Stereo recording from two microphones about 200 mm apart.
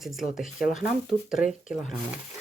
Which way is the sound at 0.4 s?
40° left (ahead or behind).